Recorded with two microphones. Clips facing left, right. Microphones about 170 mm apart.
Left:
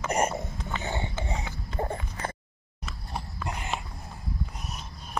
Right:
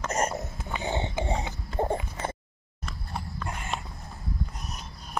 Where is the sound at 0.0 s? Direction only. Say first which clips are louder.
Left 2 dB; 10° left (ahead or behind).